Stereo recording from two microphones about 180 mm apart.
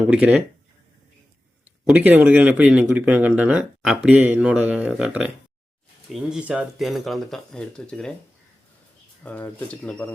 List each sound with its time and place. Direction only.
0.1 s speech: 5° right (ahead or behind)
1.8 s speech: 5° right (ahead or behind)
9.2 s speech: 10° left (ahead or behind)